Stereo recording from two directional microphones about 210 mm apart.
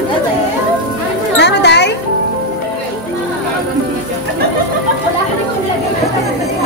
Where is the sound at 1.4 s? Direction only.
55° left (ahead or behind).